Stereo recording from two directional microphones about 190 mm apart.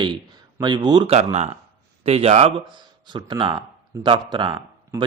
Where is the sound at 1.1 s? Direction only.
35° right (ahead or behind).